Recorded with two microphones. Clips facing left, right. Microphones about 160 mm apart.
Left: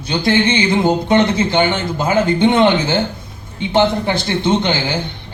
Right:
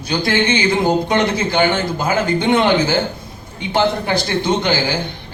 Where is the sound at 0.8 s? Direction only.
20° left (ahead or behind).